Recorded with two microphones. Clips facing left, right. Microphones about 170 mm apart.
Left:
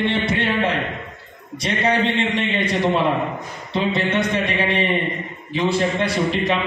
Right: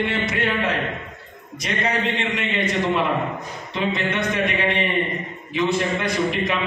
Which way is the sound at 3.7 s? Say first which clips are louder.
Left 3 dB; 30° left (ahead or behind).